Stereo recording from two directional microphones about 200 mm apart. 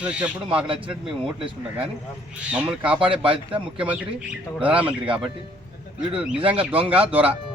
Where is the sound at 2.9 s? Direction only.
25° right (ahead or behind).